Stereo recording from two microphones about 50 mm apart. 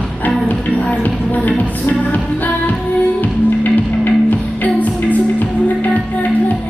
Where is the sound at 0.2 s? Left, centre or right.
Left.